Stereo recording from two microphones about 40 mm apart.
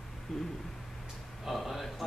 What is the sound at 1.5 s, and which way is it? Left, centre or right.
Speech, centre.